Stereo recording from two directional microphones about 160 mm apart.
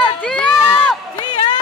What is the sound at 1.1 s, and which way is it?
Run, 30° left (ahead or behind).